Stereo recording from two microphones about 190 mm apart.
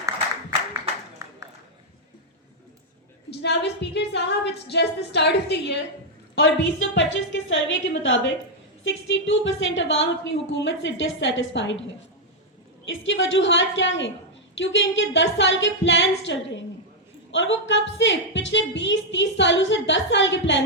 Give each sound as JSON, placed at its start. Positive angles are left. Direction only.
{"t": 1.2, "sound": "a sound", "side_deg": -15}
{"t": 3.2, "sound": "a woman's voice", "side_deg": 65}
{"t": 12.9, "sound": "a woman's voice", "side_deg": 75}